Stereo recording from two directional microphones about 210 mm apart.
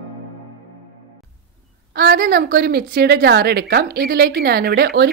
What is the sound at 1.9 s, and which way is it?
A woman's voice, 45° right (ahead or behind).